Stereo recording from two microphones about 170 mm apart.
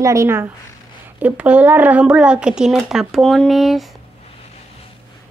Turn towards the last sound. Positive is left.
turn(degrees=0)  # may be behind; listen again after turning